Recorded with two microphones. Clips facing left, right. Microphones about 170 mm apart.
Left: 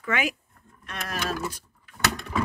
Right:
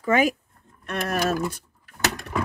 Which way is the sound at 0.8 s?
55° right (ahead or behind).